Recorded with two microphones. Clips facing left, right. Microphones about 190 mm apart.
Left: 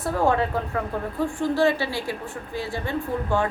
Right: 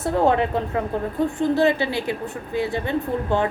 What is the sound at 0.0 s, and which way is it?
A woman's voice, 20° right (ahead or behind).